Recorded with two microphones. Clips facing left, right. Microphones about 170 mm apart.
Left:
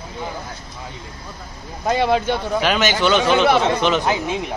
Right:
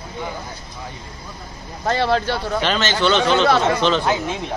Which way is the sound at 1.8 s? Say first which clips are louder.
Left 1 dB; 10° left (ahead or behind).